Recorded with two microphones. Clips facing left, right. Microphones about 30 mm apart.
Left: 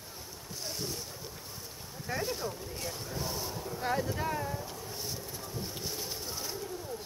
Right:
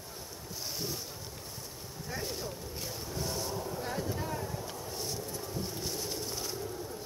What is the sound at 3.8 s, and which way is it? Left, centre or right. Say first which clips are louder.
Speech: left 9 dB; centre.